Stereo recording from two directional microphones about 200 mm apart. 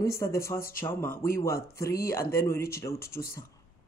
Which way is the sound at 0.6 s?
45° left (ahead or behind).